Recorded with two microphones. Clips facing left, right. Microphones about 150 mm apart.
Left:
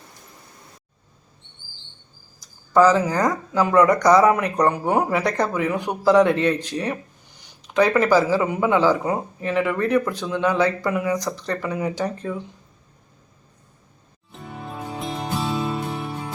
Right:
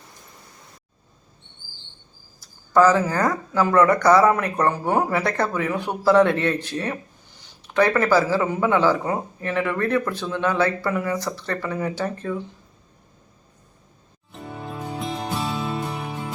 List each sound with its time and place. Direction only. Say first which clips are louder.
2.4 s speech: left 1 dB; 15° left (ahead or behind)
14.9 s music: left 1 dB; centre (ahead or behind)